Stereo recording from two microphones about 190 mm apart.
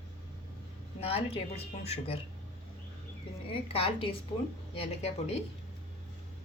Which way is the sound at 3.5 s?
30° left (ahead or behind).